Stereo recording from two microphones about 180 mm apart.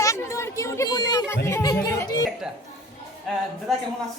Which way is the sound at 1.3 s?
15° left (ahead or behind).